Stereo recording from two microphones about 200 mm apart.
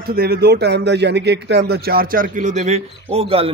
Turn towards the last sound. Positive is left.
turn(degrees=-30)  # may be behind; listen again after turning